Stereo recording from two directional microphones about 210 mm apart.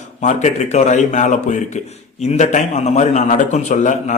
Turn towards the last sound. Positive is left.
turn(degrees=35)  # may be behind; listen again after turning